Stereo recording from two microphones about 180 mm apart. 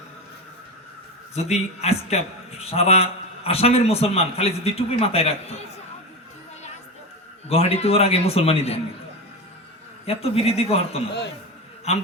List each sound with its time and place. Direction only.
1.4 s a man's voice: 35° left (ahead or behind)
7.4 s a man's voice: 35° left (ahead or behind)
10.1 s a man's voice: 35° left (ahead or behind)